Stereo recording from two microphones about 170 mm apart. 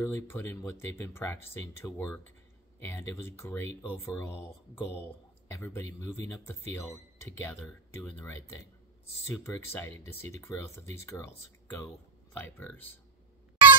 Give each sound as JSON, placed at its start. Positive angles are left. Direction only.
{"t": 0.0, "sound": "speech", "side_deg": 15}